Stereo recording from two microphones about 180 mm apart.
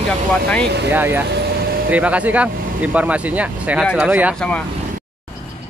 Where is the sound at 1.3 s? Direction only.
60° right (ahead or behind).